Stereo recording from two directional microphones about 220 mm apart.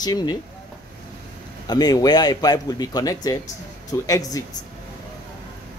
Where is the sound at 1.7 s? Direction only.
15° left (ahead or behind).